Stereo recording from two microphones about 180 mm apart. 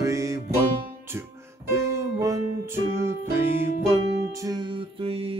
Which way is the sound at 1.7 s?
15° right (ahead or behind).